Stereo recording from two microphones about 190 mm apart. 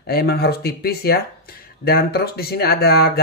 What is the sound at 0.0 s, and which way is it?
Speech, 55° left (ahead or behind).